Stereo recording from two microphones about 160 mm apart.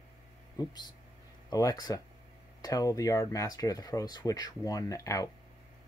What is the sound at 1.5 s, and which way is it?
Speech, 25° left (ahead or behind).